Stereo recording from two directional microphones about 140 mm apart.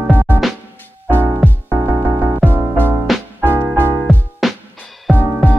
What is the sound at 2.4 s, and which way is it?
Music, centre (ahead or behind).